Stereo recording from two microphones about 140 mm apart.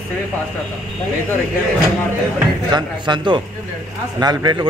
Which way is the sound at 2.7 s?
35° right (ahead or behind).